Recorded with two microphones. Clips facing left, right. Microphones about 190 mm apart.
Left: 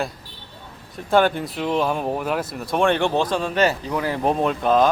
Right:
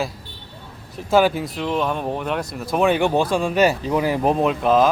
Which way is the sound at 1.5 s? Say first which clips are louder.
Left 1 dB; 5° left (ahead or behind).